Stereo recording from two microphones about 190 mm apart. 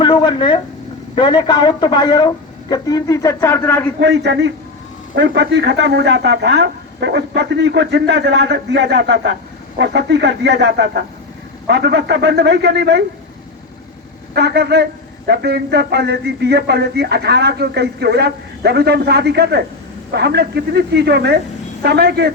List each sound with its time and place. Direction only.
0.0 s a man's voice: 25° left (ahead or behind)
4.0 s speech: 65° right (ahead or behind)
14.3 s speech: 60° right (ahead or behind)